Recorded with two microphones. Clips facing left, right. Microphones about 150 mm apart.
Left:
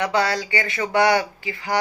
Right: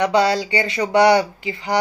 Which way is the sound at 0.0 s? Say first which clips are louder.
Right 5 dB; 20° right (ahead or behind).